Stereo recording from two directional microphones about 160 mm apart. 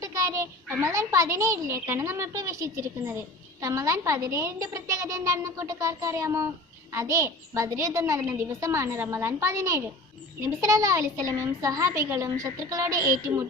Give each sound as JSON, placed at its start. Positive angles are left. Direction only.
{"t": 0.0, "sound": "a child's voice", "side_deg": -20}